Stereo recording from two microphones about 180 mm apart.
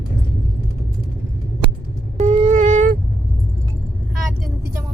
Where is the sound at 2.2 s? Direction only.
40° right (ahead or behind).